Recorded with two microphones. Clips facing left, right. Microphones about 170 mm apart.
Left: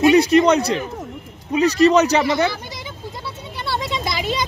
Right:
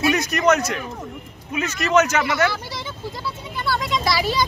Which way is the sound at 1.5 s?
35° left (ahead or behind).